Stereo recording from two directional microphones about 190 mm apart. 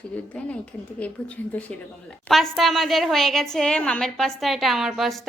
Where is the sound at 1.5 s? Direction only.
10° left (ahead or behind).